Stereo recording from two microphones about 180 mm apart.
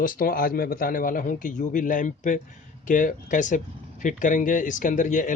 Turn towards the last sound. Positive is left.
turn(degrees=45)  # may be behind; listen again after turning